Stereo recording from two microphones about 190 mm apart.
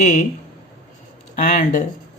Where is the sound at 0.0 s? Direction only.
40° left (ahead or behind).